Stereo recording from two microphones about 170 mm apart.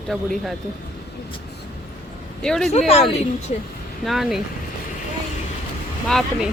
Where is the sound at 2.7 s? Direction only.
35° left (ahead or behind).